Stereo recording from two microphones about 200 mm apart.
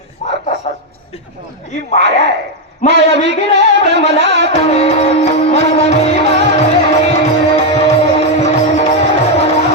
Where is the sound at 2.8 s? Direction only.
60° right (ahead or behind).